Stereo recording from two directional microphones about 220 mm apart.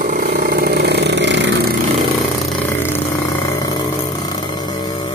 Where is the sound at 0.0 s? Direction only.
40° right (ahead or behind).